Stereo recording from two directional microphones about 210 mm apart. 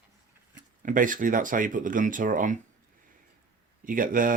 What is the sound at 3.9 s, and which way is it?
Speech, 40° right (ahead or behind).